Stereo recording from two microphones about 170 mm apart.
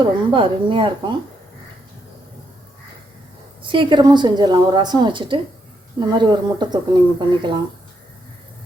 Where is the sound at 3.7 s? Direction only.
30° right (ahead or behind).